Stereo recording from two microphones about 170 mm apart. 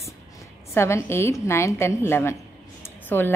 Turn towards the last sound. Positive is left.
turn(degrees=10)  # may be behind; listen again after turning